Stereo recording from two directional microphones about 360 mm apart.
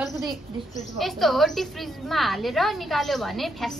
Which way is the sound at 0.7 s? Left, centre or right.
Centre.